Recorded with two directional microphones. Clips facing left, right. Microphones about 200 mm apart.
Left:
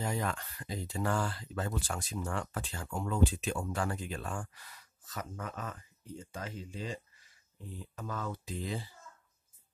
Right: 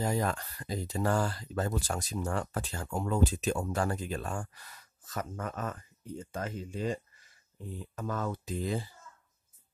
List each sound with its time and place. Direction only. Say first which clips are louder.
0.0 s speech: right 4 dB; 40° right (ahead or behind)